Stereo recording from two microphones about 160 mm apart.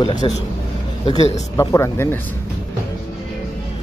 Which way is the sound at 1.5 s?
20° left (ahead or behind).